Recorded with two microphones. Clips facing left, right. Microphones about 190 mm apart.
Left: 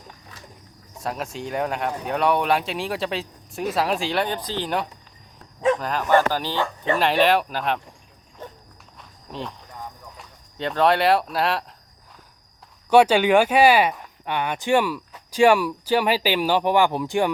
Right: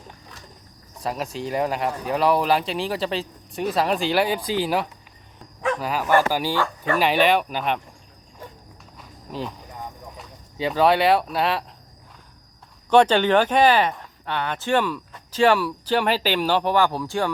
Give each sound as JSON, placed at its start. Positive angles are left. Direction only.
{"t": 0.9, "sound": "speech", "side_deg": 0}
{"t": 6.5, "sound": "speech", "side_deg": 20}
{"t": 7.0, "sound": "speech", "side_deg": 0}
{"t": 9.0, "sound": "cricket", "side_deg": -5}
{"t": 10.2, "sound": "speech", "side_deg": -5}
{"t": 12.9, "sound": "speech", "side_deg": 10}